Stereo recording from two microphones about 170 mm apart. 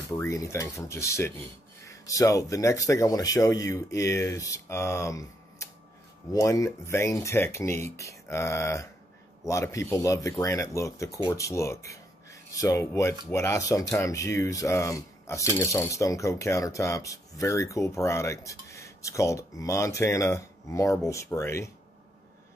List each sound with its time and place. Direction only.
0.2 s speech: 15° left (ahead or behind)